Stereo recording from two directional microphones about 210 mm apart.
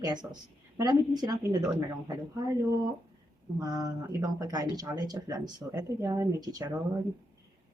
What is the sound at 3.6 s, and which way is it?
A woman's voice, 20° right (ahead or behind).